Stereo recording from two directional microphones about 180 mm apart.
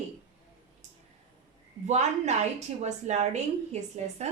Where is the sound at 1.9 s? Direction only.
40° right (ahead or behind).